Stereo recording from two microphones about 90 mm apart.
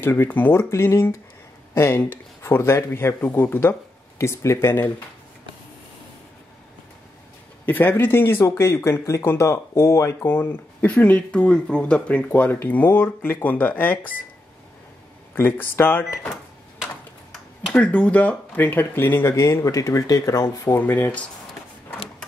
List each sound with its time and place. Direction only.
0.0 s speech: 25° left (ahead or behind)
7.6 s speech: 20° left (ahead or behind)
10.3 s speech: 20° left (ahead or behind)
15.3 s speech: 25° left (ahead or behind)
16.3 s cash register: 5° right (ahead or behind)
17.7 s speech: 15° left (ahead or behind)